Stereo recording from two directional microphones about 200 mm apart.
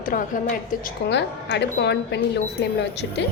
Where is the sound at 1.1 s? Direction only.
60° left (ahead or behind).